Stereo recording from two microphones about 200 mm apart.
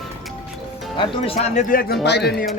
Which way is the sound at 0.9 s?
25° left (ahead or behind).